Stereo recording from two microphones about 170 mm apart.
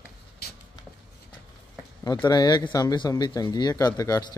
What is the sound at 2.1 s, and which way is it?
Speech, 25° left (ahead or behind).